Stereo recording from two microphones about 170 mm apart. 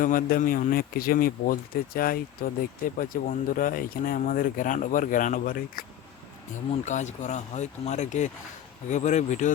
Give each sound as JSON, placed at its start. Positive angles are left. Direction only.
{"t": 0.0, "sound": "speech", "side_deg": 55}
{"t": 6.8, "sound": "speech", "side_deg": 45}